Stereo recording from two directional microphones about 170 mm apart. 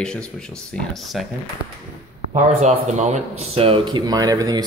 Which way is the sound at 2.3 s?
40° right (ahead or behind).